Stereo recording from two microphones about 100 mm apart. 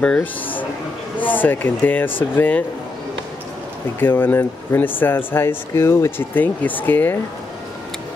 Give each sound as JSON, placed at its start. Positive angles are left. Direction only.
{"t": 0.0, "sound": "speech", "side_deg": 10}
{"t": 4.0, "sound": "speech", "side_deg": 20}